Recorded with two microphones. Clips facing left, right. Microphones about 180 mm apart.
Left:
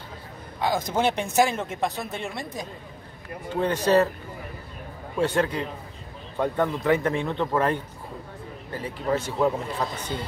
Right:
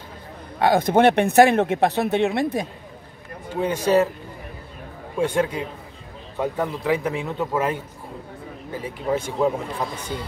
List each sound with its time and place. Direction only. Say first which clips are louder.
0.6 s speech: right 8 dB; 60° right (ahead or behind)
3.6 s a man's voice: right 2 dB; 10° right (ahead or behind)
5.2 s a man's voice: right 2 dB; 10° right (ahead or behind)